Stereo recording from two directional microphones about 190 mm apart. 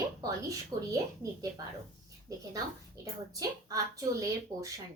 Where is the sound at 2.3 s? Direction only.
15° right (ahead or behind).